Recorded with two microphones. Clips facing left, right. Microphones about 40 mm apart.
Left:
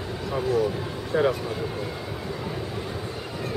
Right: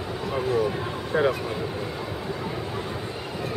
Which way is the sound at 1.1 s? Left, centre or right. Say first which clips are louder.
Even; centre.